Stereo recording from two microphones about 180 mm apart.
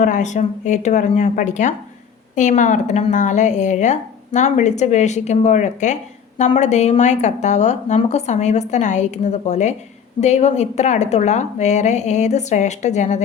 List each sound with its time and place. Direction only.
0.0 s a woman's voice: 45° left (ahead or behind)